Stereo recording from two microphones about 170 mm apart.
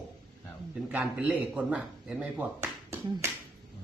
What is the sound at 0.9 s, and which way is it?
A man's voice, 5° right (ahead or behind).